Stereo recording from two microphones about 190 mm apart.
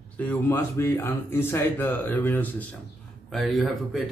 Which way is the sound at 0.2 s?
10° left (ahead or behind).